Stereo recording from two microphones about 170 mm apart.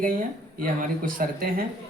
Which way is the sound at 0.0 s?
55° right (ahead or behind).